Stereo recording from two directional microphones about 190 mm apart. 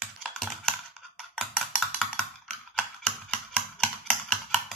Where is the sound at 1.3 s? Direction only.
Centre (ahead or behind).